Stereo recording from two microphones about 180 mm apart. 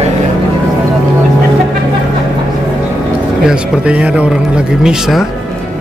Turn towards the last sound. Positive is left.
turn(degrees=0)  # may be behind; listen again after turning